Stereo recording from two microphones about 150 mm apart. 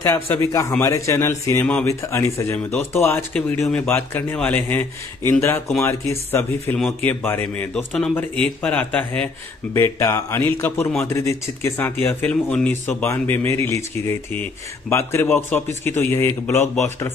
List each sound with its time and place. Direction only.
0.0 s a man's voice: 20° left (ahead or behind)
3.6 s a man's voice: 5° left (ahead or behind)